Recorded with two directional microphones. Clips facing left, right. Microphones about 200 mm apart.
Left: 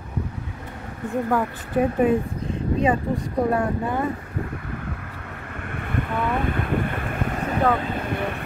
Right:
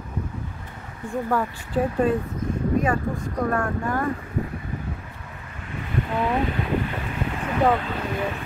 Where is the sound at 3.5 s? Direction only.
15° left (ahead or behind).